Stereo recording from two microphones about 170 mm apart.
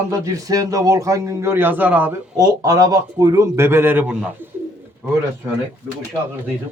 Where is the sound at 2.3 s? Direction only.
20° right (ahead or behind).